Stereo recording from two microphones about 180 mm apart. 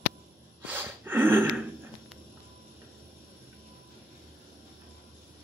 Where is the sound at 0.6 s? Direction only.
10° right (ahead or behind).